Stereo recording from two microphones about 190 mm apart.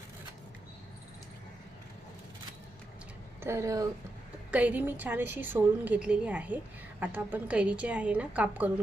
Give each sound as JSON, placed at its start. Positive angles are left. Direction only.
{"t": 3.4, "sound": "a woman's voice", "side_deg": -15}